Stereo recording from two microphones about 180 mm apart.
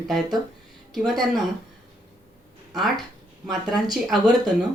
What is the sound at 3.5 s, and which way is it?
Speech, centre (ahead or behind).